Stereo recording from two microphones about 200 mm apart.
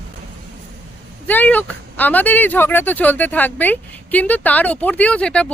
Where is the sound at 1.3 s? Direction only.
10° left (ahead or behind).